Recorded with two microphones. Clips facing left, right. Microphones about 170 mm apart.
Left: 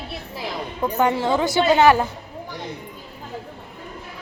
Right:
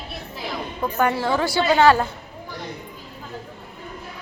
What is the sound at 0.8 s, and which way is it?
A woman's voice, 15° left (ahead or behind).